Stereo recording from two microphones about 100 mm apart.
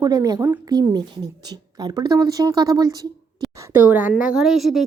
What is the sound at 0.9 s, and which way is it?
A woman's voice, 45° right (ahead or behind).